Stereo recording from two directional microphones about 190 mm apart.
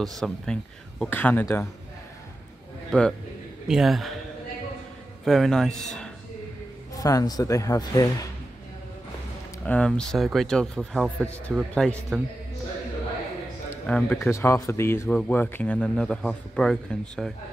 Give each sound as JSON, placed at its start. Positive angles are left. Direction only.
{"t": 0.2, "sound": "speech", "side_deg": 5}
{"t": 2.9, "sound": "a man's voice", "side_deg": 5}
{"t": 5.2, "sound": "speech", "side_deg": 0}
{"t": 7.0, "sound": "speech", "side_deg": 20}
{"t": 9.7, "sound": "speech", "side_deg": 5}
{"t": 13.8, "sound": "speech", "side_deg": 5}